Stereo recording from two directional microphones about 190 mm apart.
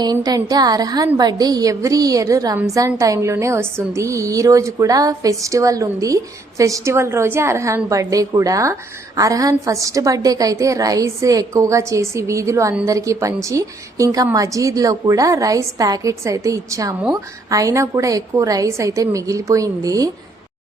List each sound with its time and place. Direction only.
0.0 s a woman's voice: 20° right (ahead or behind)